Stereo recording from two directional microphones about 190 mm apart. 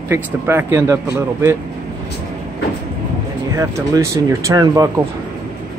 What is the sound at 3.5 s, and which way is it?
Speech, 15° right (ahead or behind).